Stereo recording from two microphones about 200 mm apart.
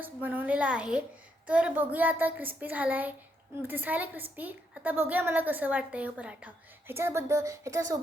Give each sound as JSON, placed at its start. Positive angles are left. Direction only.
{"t": 0.0, "sound": "a child's voice", "side_deg": -10}